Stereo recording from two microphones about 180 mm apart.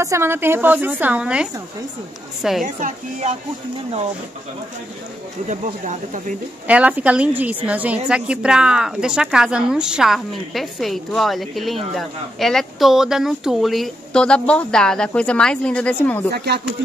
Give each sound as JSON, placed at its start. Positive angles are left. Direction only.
{"t": 0.0, "sound": "a woman's voice", "side_deg": -15}
{"t": 2.6, "sound": "a woman's voice", "side_deg": -40}
{"t": 5.5, "sound": "speech", "side_deg": -45}
{"t": 6.7, "sound": "a woman's voice", "side_deg": -5}
{"t": 16.3, "sound": "speech", "side_deg": -65}